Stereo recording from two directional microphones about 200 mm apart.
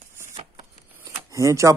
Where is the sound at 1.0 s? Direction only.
15° right (ahead or behind).